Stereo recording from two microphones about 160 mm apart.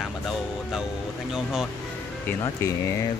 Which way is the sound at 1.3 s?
Centre (ahead or behind).